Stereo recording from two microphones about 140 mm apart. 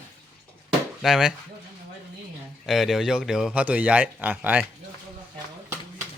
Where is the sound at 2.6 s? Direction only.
Centre (ahead or behind).